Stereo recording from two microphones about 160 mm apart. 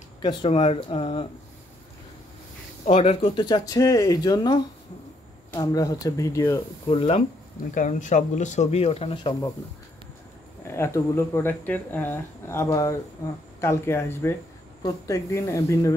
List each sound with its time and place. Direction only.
0.2 s speech: 25° left (ahead or behind)
0.5 s speech: 40° left (ahead or behind)
2.8 s speech: 40° left (ahead or behind); by 6.6 s 20° left (ahead or behind)
6.9 s speech: 35° left (ahead or behind)
7.7 s speech: 50° left (ahead or behind); by 9.5 s 30° left (ahead or behind)
10.7 s speech: 15° left (ahead or behind)